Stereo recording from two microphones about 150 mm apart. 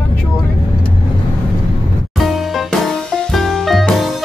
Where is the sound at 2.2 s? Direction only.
Centre (ahead or behind).